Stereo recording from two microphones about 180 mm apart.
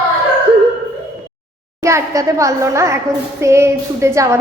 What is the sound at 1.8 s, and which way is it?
A woman's voice, 15° right (ahead or behind).